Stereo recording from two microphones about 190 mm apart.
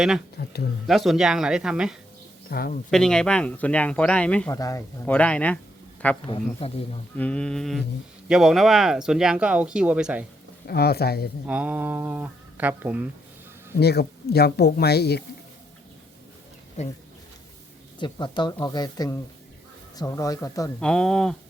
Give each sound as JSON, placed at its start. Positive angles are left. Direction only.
{"t": 0.3, "sound": "speech", "side_deg": 55}
{"t": 0.9, "sound": "speech", "side_deg": 0}
{"t": 2.5, "sound": "speech", "side_deg": 50}
{"t": 2.9, "sound": "a man's voice", "side_deg": 5}
{"t": 4.4, "sound": "a man's voice", "side_deg": 15}
{"t": 6.3, "sound": "speech", "side_deg": 30}
{"t": 7.2, "sound": "speech", "side_deg": 5}
{"t": 10.7, "sound": "speech", "side_deg": 55}
{"t": 11.4, "sound": "speech", "side_deg": -10}
{"t": 13.7, "sound": "speech", "side_deg": 55}
{"t": 16.8, "sound": "speech", "side_deg": 35}
{"t": 18.0, "sound": "speech", "side_deg": 25}
{"t": 20.7, "sound": "speech", "side_deg": 5}